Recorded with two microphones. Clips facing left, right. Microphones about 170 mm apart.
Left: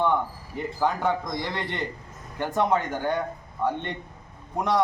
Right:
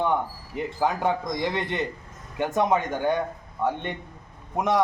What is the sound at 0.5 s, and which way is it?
Speech, 15° right (ahead or behind).